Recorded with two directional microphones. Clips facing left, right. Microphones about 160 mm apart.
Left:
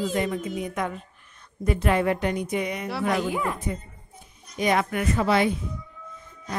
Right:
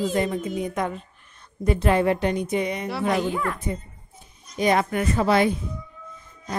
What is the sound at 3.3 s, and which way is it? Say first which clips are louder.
Speech: even; 15° left (ahead or behind).